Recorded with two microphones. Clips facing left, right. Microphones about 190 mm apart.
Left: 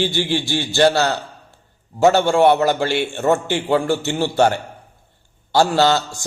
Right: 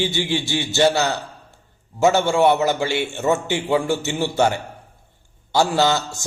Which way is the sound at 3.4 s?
15° right (ahead or behind).